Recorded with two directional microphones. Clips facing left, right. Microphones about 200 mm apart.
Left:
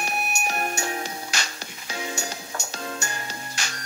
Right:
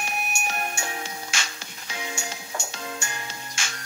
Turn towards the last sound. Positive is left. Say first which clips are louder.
# left 2 dB
turn(degrees=40)  # may be behind; listen again after turning